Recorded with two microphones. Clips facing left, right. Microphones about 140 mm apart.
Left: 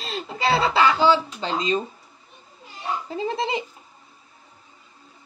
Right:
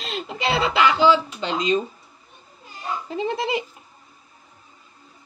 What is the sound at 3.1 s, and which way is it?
Speech, 30° left (ahead or behind).